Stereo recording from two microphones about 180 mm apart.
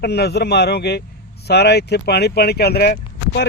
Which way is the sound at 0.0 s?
65° left (ahead or behind).